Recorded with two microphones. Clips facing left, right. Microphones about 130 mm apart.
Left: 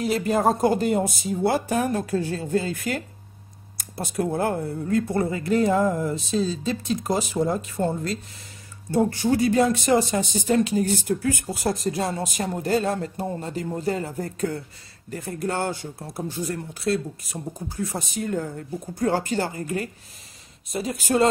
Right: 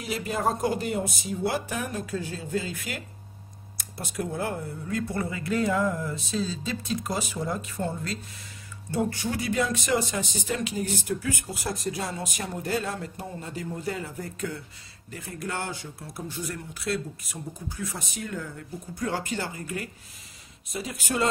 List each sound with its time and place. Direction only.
0.0 s speech: 45° left (ahead or behind)
4.2 s speech: 50° left (ahead or behind)